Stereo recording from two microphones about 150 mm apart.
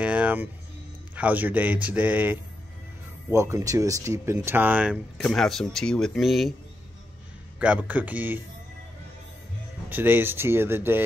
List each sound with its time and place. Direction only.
0.0 s music: 10° right (ahead or behind)
1.1 s a man's voice: 10° right (ahead or behind)
5.2 s speech: 5° left (ahead or behind)
7.5 s a man's voice: 10° right (ahead or behind)
9.8 s a man's voice: 15° right (ahead or behind)